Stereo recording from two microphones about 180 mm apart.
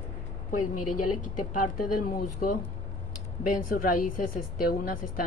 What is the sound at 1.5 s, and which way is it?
A woman's voice, 50° left (ahead or behind).